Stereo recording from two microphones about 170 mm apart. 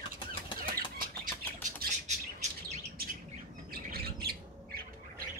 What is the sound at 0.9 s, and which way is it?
Bird, 55° right (ahead or behind).